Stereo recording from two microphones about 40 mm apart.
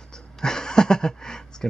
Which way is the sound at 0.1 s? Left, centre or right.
Centre.